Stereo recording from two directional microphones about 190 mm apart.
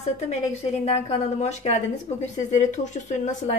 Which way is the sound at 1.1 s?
35° left (ahead or behind).